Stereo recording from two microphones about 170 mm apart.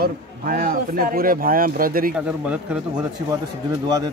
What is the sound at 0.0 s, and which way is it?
Speech, 60° right (ahead or behind).